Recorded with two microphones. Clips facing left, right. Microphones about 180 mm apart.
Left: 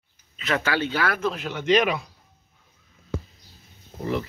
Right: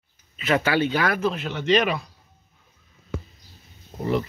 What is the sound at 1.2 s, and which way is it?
Speech, 10° left (ahead or behind).